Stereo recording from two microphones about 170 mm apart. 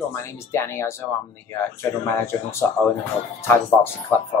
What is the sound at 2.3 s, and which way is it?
Speech, 20° left (ahead or behind).